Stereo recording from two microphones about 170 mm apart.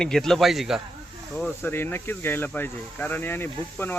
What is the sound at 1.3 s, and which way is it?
Speech, 10° left (ahead or behind).